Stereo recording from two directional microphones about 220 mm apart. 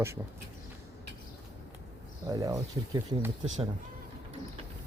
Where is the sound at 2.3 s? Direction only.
15° right (ahead or behind).